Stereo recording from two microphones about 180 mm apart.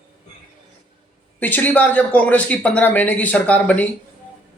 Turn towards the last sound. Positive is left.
turn(degrees=10)  # may be behind; listen again after turning